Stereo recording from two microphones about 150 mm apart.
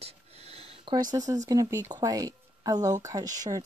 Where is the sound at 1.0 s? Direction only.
25° right (ahead or behind).